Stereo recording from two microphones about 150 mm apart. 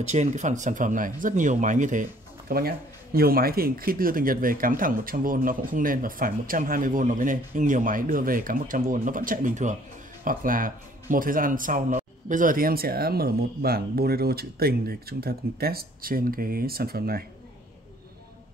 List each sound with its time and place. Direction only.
0.0 s speech: 50° right (ahead or behind)
10.2 s speech: 65° right (ahead or behind); by 17.2 s 90° right